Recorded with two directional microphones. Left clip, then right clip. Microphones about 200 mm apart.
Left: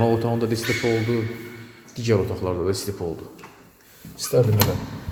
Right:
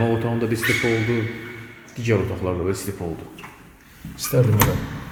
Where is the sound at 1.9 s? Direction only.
15° left (ahead or behind).